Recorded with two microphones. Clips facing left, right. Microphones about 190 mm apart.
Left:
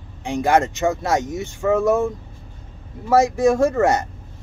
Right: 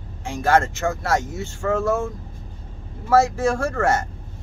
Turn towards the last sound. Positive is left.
turn(degrees=20)  # may be behind; listen again after turning